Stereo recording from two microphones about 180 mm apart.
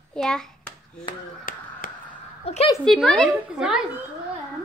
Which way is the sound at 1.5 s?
50° left (ahead or behind).